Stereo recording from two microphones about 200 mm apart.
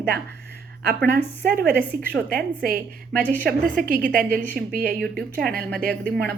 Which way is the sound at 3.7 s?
45° right (ahead or behind).